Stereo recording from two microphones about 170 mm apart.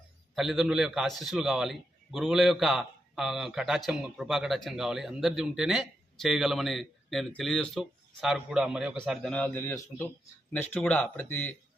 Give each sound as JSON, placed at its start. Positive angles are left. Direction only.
{"t": 0.3, "sound": "a man's voice", "side_deg": 0}
{"t": 9.3, "sound": "speech", "side_deg": 10}